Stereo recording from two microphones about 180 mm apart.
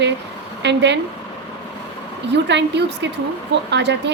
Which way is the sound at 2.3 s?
75° right (ahead or behind).